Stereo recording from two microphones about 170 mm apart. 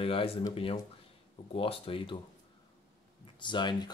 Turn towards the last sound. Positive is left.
turn(degrees=25)  # may be behind; listen again after turning